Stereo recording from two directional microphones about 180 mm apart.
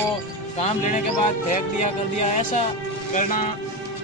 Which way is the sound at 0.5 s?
40° left (ahead or behind).